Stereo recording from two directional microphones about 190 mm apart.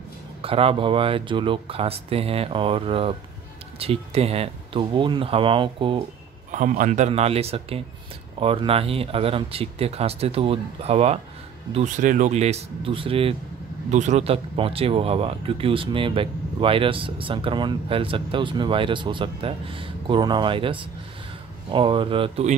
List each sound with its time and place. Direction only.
0.4 s speech: 30° right (ahead or behind)
6.5 s speech: 45° right (ahead or behind); by 22.5 s 30° right (ahead or behind)